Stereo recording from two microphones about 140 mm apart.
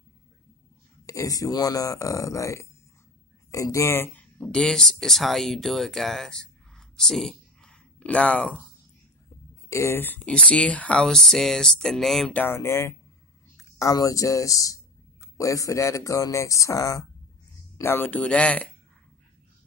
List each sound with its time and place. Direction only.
1.0 s speech: 25° left (ahead or behind); by 8.5 s 10° left (ahead or behind)
9.7 s speech: 20° left (ahead or behind)